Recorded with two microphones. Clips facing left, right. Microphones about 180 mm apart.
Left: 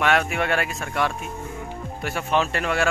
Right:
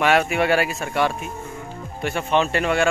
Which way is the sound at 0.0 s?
5° right (ahead or behind).